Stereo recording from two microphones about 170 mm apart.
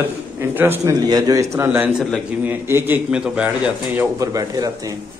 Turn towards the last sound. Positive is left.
turn(degrees=-20)  # may be behind; listen again after turning